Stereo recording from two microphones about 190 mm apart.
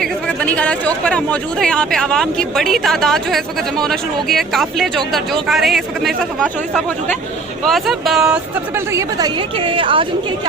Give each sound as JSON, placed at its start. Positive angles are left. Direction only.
{"t": 0.0, "sound": "speech", "side_deg": 5}
{"t": 7.7, "sound": "speech", "side_deg": 0}